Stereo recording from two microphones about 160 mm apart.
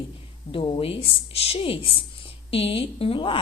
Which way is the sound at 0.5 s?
35° left (ahead or behind).